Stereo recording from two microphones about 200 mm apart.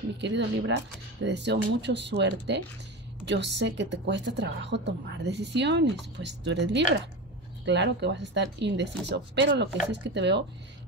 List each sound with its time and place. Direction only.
0.2 s a woman's voice: 60° right (ahead or behind)